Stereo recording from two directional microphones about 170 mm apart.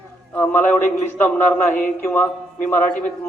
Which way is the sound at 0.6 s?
50° left (ahead or behind).